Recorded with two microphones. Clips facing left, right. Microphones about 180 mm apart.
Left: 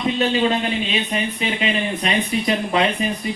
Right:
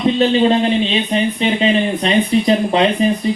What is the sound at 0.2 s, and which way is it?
Speech, 30° right (ahead or behind).